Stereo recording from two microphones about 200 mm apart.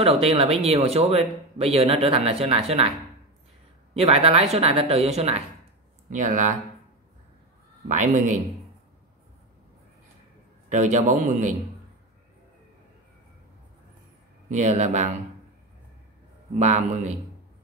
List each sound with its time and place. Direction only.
0.0 s speech: 30° right (ahead or behind)
3.9 s a woman's voice: 30° right (ahead or behind)
7.9 s a woman's voice: 35° right (ahead or behind)
10.7 s a woman's voice: 35° right (ahead or behind)
14.5 s a woman's voice: 35° right (ahead or behind)
16.5 s a woman's voice: 35° right (ahead or behind)